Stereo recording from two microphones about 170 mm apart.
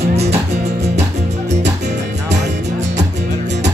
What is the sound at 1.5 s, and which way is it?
Music, 90° right.